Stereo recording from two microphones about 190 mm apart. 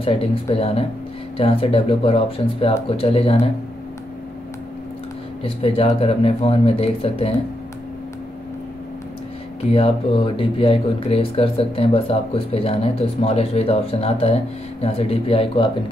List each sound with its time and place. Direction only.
0.0 s speech: 30° left (ahead or behind)
5.4 s speech: 30° left (ahead or behind)
9.6 s speech: 30° left (ahead or behind)